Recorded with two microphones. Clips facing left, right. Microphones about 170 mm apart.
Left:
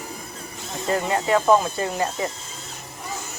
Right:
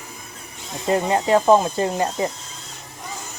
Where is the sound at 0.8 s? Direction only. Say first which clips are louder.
Right 3 dB; 25° right (ahead or behind).